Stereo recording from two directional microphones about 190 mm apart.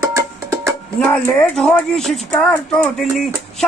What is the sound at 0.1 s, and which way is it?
Music, 15° right (ahead or behind).